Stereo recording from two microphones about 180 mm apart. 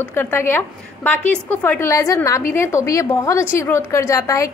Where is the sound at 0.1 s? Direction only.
10° left (ahead or behind).